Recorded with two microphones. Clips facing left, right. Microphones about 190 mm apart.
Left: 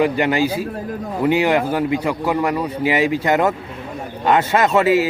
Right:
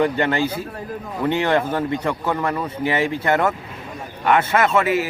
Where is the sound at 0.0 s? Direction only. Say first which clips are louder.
Left 2 dB; 15° left (ahead or behind).